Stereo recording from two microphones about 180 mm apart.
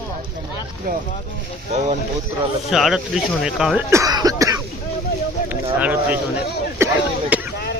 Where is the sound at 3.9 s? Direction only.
20° right (ahead or behind).